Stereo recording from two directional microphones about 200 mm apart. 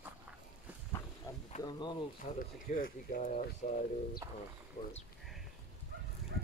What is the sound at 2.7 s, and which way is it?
Speech, 45° left (ahead or behind).